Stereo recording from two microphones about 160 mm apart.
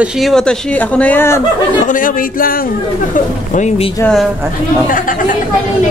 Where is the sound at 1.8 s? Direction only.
55° left (ahead or behind).